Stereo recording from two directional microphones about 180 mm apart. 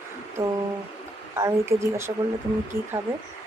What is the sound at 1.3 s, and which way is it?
Speech, 15° right (ahead or behind).